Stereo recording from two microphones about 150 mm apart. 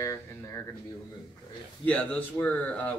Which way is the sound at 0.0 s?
20° left (ahead or behind).